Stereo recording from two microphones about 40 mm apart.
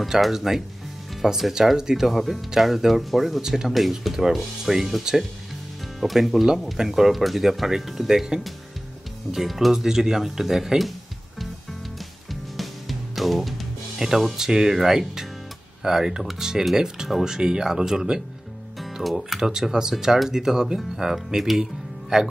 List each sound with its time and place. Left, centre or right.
0.1 s speech: centre
9.3 s speech: centre
12.3 s music: centre
13.9 s speech: centre
19.0 s speech: centre